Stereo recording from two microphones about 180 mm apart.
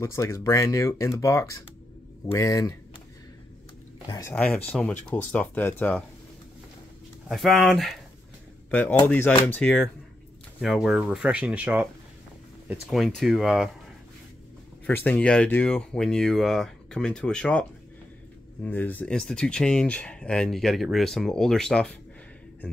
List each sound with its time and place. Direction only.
0.0 s speech: 15° left (ahead or behind)
4.1 s speech: 15° left (ahead or behind)
7.2 s speech: centre (ahead or behind)
12.9 s speech: centre (ahead or behind)
14.9 s speech: 10° left (ahead or behind)